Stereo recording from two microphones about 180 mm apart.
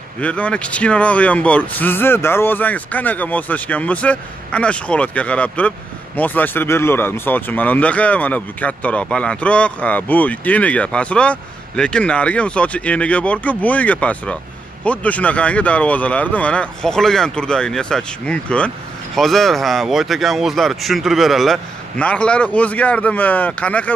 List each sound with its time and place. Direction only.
0.2 s speech: 5° left (ahead or behind)